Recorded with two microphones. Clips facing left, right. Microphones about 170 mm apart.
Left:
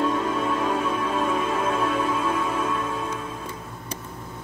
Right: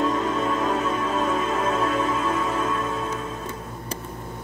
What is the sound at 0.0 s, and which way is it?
Music, centre (ahead or behind).